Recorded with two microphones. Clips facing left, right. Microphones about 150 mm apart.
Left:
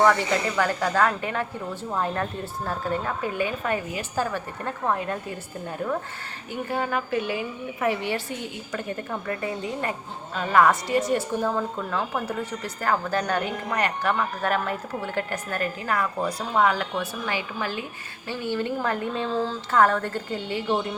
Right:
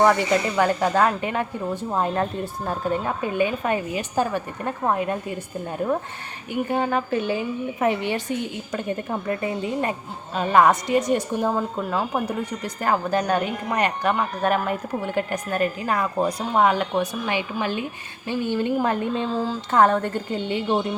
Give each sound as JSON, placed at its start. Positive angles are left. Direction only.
{"t": 0.0, "sound": "a woman's voice", "side_deg": -20}
{"t": 6.5, "sound": "a woman's voice", "side_deg": -20}